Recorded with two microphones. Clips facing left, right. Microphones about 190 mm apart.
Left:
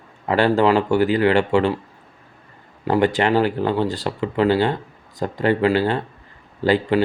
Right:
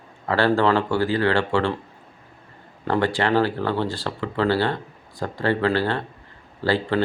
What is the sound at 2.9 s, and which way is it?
Speech, 15° left (ahead or behind).